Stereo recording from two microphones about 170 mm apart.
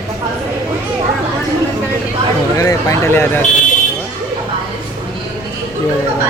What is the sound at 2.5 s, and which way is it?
Vehicle, 20° left (ahead or behind).